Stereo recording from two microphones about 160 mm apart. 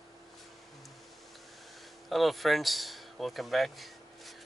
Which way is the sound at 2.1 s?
Centre (ahead or behind).